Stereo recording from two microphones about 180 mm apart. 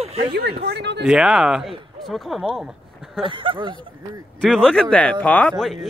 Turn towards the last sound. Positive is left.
turn(degrees=0)  # may be behind; listen again after turning